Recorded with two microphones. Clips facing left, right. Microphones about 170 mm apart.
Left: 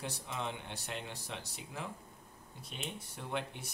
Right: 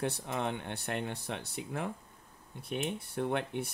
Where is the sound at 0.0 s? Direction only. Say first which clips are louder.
Right 7 dB; 60° right (ahead or behind).